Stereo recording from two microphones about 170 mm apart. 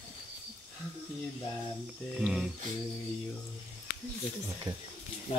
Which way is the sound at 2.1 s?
Centre (ahead or behind).